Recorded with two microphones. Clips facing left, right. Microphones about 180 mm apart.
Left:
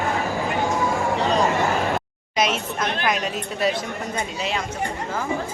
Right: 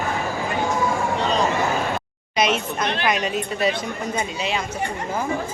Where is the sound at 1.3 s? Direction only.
Centre (ahead or behind).